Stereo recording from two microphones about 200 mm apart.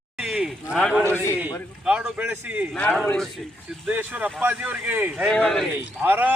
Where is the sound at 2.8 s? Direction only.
5° left (ahead or behind).